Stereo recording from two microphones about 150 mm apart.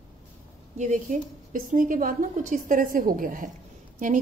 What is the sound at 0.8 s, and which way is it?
Speech, 55° right (ahead or behind).